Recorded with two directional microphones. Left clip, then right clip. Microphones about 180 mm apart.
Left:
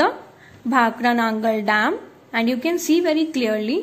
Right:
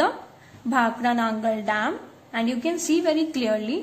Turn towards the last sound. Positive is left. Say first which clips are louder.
# left 3 dB
turn(degrees=15)  # may be behind; listen again after turning